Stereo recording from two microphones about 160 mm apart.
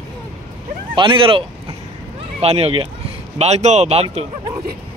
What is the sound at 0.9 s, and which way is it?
Speech, 35° right (ahead or behind).